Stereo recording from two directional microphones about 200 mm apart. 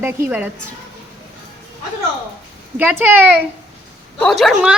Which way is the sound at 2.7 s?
10° right (ahead or behind).